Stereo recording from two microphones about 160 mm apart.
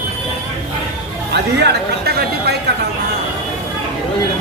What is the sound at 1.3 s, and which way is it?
Speech, 90° right.